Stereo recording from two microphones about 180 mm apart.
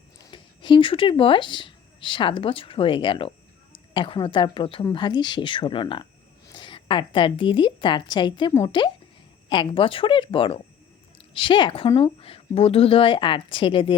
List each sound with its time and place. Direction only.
0.3 s a woman's voice: 25° left (ahead or behind)